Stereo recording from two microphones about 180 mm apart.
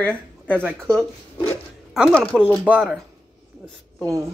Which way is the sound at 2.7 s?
5° right (ahead or behind).